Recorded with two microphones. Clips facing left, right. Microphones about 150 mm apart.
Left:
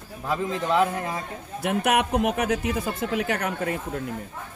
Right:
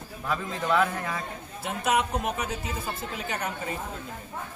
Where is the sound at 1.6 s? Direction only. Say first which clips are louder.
Left 4 dB; 65° left (ahead or behind).